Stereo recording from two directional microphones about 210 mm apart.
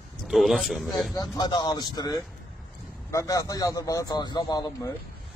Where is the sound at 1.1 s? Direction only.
20° left (ahead or behind).